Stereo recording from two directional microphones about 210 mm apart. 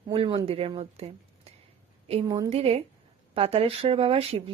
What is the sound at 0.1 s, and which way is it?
A woman's voice, 25° right (ahead or behind).